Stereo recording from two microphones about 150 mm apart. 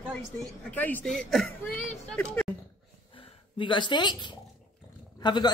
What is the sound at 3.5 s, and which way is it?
A woman's voice, 30° left (ahead or behind).